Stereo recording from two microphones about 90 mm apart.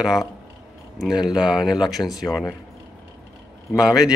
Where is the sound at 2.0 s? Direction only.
Centre (ahead or behind).